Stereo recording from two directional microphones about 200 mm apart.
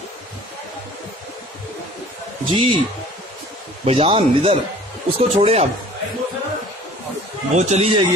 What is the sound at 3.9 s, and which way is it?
Speech, 30° right (ahead or behind).